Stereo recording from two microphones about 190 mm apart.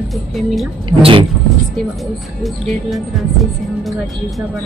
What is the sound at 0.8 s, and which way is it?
Speech, 25° right (ahead or behind).